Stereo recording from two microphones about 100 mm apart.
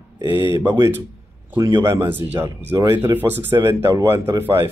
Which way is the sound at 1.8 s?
30° right (ahead or behind).